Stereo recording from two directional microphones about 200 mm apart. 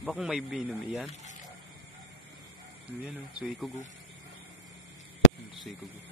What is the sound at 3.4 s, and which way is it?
Speech, centre (ahead or behind).